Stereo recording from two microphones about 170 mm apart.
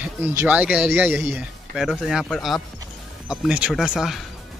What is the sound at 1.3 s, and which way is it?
Speech, centre (ahead or behind).